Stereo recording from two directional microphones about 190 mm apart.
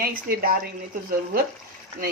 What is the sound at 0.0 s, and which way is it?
Speech, 50° right (ahead or behind).